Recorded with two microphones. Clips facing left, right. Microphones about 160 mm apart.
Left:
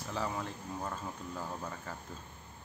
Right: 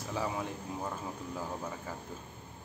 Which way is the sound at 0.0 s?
10° right (ahead or behind).